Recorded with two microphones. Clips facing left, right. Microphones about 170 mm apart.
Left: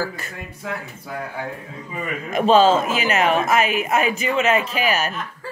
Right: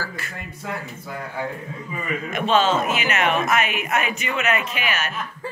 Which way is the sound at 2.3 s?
35° left (ahead or behind).